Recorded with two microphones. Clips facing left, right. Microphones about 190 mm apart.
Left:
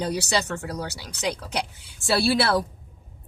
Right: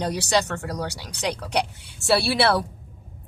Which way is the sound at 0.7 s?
Centre (ahead or behind).